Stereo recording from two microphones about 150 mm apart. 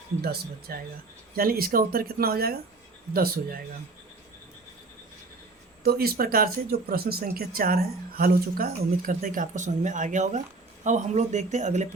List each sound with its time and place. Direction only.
0.2 s speech: 90° right
5.8 s speech: 90° right; by 11.9 s 50° right (ahead or behind)